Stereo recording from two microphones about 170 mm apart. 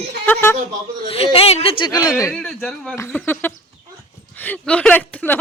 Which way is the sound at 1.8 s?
25° left (ahead or behind).